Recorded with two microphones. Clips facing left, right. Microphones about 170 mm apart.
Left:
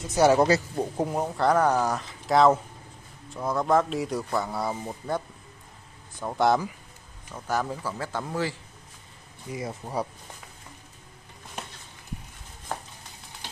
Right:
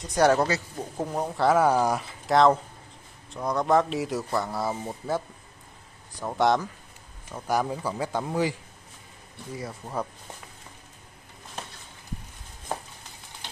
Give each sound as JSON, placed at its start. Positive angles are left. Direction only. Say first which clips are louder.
{"t": 0.0, "sound": "speech", "louder": "left 1 dB", "side_deg": 5}
{"t": 2.2, "sound": "speech", "louder": "even", "side_deg": 5}
{"t": 6.2, "sound": "speech", "louder": "even", "side_deg": 0}
{"t": 7.3, "sound": "speech", "louder": "right 2 dB", "side_deg": -10}
{"t": 9.5, "sound": "speech", "louder": "left 2 dB", "side_deg": 15}